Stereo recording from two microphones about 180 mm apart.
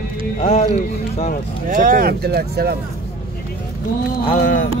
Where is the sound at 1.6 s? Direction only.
50° right (ahead or behind).